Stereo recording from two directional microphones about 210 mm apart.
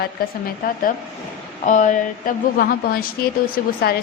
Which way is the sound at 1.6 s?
35° left (ahead or behind).